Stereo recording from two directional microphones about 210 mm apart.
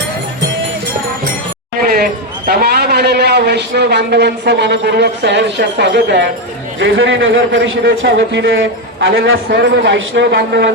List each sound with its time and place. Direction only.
2.5 s a man's voice: 50° right (ahead or behind)